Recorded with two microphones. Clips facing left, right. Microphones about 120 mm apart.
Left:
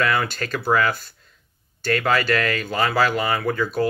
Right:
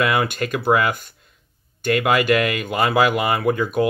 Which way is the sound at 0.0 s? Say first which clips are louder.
Right 2 dB; 15° right (ahead or behind).